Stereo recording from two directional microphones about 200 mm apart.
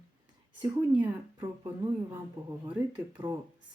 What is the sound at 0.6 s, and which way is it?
Speech, 20° right (ahead or behind).